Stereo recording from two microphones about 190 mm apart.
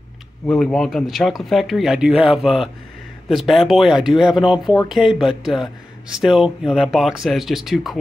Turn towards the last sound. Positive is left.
turn(degrees=0)  # may be behind; listen again after turning